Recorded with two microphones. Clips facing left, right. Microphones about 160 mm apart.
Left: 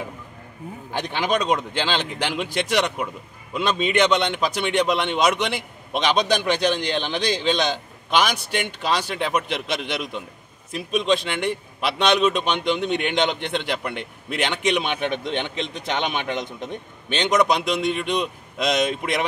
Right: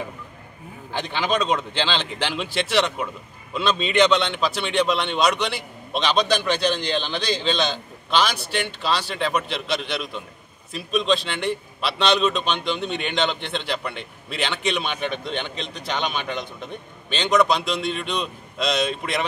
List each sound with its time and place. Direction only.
1.1 s a man's voice: 15° left (ahead or behind)